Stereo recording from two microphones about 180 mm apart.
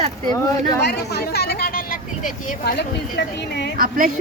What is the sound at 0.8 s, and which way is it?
Speech, 65° left (ahead or behind).